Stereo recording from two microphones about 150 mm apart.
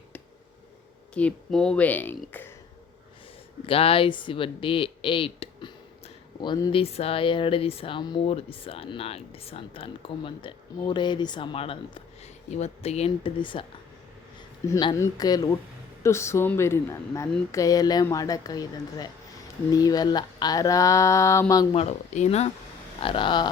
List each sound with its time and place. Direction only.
1.1 s speech: 5° left (ahead or behind)
3.7 s speech: 40° left (ahead or behind)
14.9 s speech: 25° left (ahead or behind)
21.7 s speech: 45° left (ahead or behind)